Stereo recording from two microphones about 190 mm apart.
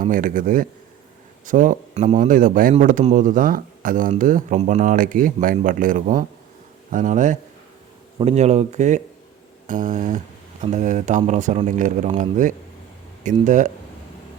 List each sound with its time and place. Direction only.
0.0 s speech: 45° right (ahead or behind)